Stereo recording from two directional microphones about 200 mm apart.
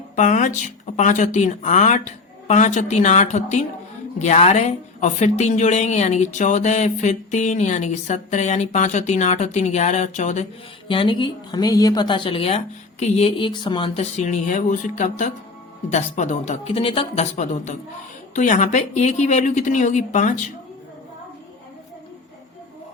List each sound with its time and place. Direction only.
0.2 s a woman's voice: 40° left (ahead or behind)
10.8 s a woman's voice: 25° left (ahead or behind)